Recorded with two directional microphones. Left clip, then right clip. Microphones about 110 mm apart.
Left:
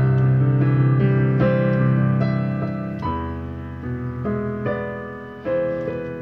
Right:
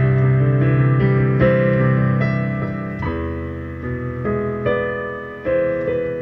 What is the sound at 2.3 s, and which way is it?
Music, 40° left (ahead or behind).